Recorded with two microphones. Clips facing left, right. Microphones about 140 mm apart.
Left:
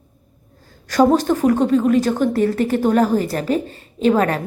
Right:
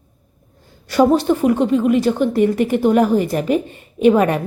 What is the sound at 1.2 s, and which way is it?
A woman's voice, 10° right (ahead or behind).